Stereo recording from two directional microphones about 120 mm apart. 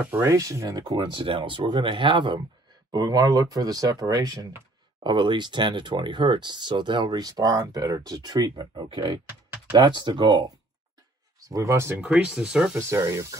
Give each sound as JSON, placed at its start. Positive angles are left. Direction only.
{"t": 0.0, "sound": "speech", "side_deg": -20}
{"t": 11.3, "sound": "speech", "side_deg": -30}
{"t": 12.0, "sound": "speech", "side_deg": -5}
{"t": 12.7, "sound": "speech", "side_deg": -25}